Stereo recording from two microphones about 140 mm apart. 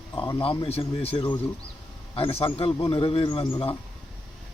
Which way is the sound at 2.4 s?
40° left (ahead or behind).